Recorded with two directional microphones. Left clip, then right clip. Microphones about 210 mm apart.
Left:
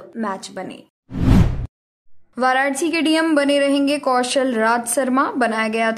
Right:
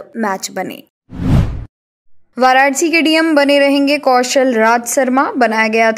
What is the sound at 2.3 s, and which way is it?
A woman's voice, 25° right (ahead or behind).